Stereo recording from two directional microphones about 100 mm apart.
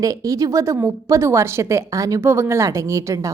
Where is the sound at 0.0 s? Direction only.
35° right (ahead or behind).